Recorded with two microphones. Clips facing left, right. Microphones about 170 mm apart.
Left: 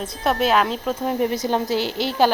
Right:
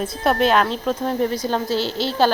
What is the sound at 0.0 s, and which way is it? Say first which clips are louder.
Speech: right 2 dB; centre (ahead or behind).